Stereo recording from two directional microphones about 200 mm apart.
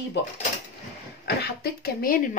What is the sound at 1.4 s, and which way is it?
Speech, 50° left (ahead or behind).